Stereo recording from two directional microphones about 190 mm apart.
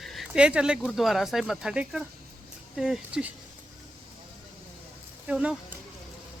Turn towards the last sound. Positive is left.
turn(degrees=-5)  # may be behind; listen again after turning